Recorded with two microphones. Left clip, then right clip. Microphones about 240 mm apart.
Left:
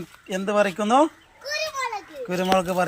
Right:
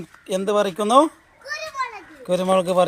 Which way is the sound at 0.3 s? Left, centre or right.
Centre.